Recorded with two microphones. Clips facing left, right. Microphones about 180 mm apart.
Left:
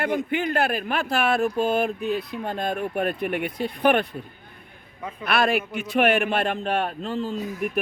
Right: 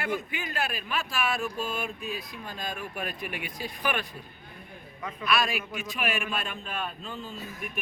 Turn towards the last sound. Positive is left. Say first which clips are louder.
# left 11 dB
turn(degrees=70)  # may be behind; listen again after turning